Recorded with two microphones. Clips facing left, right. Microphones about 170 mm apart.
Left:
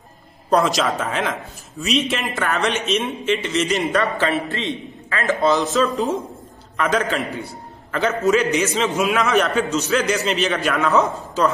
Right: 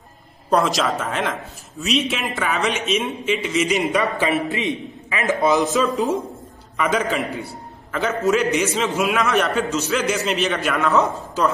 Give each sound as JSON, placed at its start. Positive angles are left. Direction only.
{"t": 0.5, "sound": "a man's voice", "side_deg": 0}
{"t": 5.7, "sound": "a man's voice", "side_deg": 0}